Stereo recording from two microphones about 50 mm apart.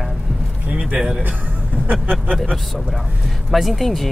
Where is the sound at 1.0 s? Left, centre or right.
Centre.